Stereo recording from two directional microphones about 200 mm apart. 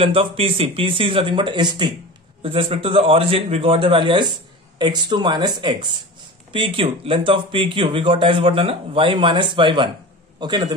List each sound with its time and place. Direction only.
0.0 s a man's voice: 30° right (ahead or behind)